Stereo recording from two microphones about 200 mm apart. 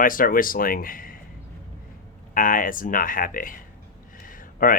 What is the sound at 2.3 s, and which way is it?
Speech, 40° left (ahead or behind).